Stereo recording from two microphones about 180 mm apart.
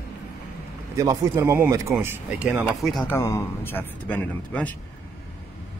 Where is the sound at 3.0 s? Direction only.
15° left (ahead or behind).